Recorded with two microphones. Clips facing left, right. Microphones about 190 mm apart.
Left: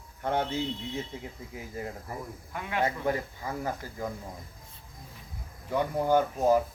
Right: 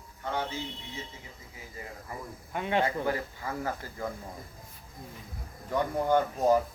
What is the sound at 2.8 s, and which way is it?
Speech, 20° left (ahead or behind).